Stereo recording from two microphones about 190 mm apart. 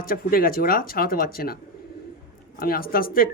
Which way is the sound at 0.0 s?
50° left (ahead or behind).